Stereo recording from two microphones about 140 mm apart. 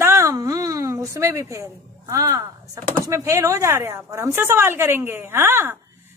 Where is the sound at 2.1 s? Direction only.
25° right (ahead or behind).